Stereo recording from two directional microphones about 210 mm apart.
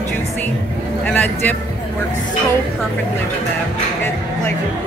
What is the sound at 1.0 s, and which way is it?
Vehicle, 10° left (ahead or behind).